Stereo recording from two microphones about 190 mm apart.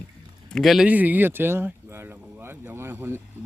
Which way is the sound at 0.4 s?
Centre (ahead or behind).